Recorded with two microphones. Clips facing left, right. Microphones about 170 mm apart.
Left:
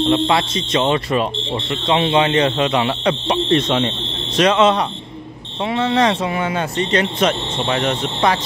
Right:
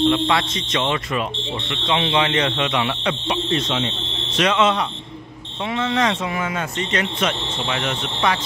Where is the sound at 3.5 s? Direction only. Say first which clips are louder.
Left 7 dB; 50° left (ahead or behind).